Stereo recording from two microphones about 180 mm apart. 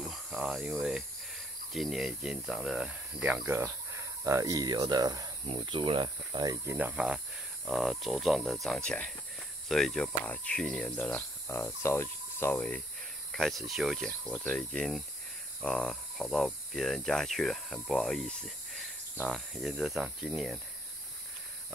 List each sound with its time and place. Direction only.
0.0 s cricket: 5° right (ahead or behind)
1.7 s speech: centre (ahead or behind)